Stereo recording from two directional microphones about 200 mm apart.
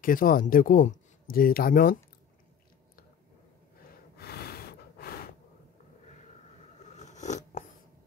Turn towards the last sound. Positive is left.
turn(degrees=35)  # may be behind; listen again after turning